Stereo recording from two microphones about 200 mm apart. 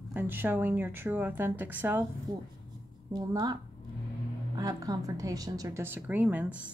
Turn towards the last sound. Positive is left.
turn(degrees=-10)  # may be behind; listen again after turning